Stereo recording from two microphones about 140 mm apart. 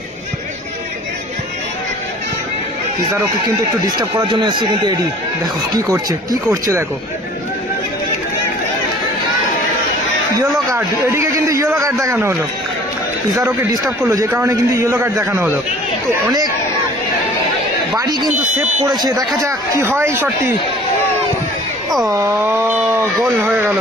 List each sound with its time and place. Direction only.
3.8 s a man's voice: 30° right (ahead or behind)
10.8 s a man's voice: 20° right (ahead or behind)
14.0 s a man's voice: 20° right (ahead or behind)
17.9 s a man's voice: 30° right (ahead or behind)
22.0 s speech: 20° right (ahead or behind)